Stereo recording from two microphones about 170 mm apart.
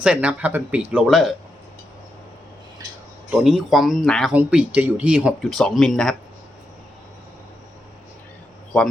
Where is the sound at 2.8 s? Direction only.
20° right (ahead or behind).